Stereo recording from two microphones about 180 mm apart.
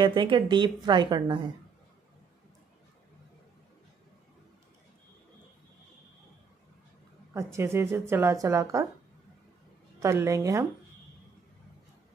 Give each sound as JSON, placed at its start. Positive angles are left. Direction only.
{"t": 0.0, "sound": "speech", "side_deg": -25}
{"t": 7.3, "sound": "speech", "side_deg": -15}
{"t": 10.0, "sound": "speech", "side_deg": -15}